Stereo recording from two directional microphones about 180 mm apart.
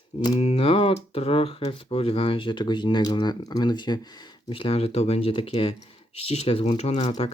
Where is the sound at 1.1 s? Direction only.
30° left (ahead or behind).